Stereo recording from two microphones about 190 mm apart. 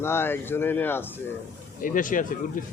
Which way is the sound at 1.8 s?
45° left (ahead or behind).